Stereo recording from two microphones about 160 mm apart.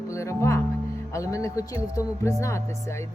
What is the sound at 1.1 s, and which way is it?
Speech, 20° left (ahead or behind).